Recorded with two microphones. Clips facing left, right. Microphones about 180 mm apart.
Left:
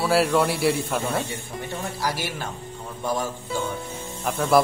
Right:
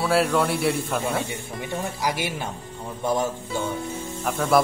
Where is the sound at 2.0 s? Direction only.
20° right (ahead or behind).